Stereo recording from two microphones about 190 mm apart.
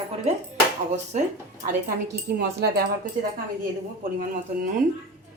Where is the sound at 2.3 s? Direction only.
55° right (ahead or behind).